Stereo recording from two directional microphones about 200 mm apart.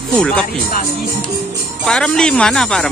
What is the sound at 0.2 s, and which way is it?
Speech, 5° left (ahead or behind).